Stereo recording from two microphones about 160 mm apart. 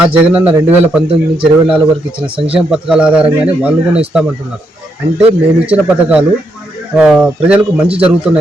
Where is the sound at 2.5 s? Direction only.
5° right (ahead or behind).